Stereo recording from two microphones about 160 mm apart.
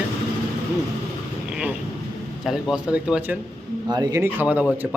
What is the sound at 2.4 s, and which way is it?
Speech, centre (ahead or behind).